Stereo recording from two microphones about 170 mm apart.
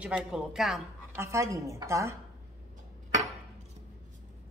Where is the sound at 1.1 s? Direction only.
15° right (ahead or behind).